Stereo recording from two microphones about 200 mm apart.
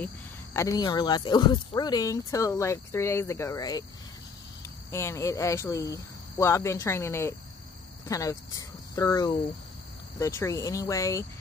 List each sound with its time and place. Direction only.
0.0 s speech: 15° left (ahead or behind)
4.9 s speech: 15° left (ahead or behind)